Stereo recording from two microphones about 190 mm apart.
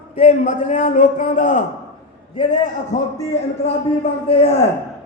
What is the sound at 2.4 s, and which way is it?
Speech, 20° left (ahead or behind).